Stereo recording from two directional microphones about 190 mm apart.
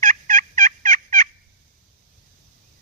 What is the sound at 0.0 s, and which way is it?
Fowl, 45° right (ahead or behind).